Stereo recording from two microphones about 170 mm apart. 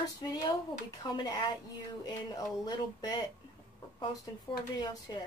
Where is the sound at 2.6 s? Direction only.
25° left (ahead or behind).